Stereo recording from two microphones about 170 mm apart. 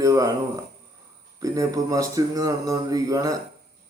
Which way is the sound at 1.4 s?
20° right (ahead or behind).